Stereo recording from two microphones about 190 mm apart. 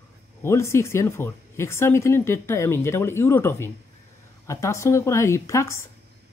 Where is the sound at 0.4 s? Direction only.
15° left (ahead or behind).